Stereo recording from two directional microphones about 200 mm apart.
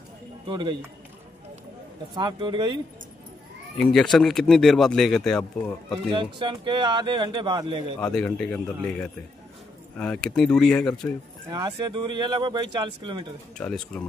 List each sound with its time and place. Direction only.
0.5 s speech: 20° right (ahead or behind)
2.1 s speech: 20° right (ahead or behind)
3.7 s a man's voice: 5° left (ahead or behind)
6.1 s speech: 25° right (ahead or behind)
8.0 s a man's voice: 5° left (ahead or behind)
11.4 s speech: 20° right (ahead or behind)
13.6 s a man's voice: 5° left (ahead or behind)